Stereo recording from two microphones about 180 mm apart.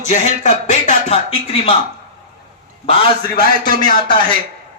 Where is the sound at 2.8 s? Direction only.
35° left (ahead or behind).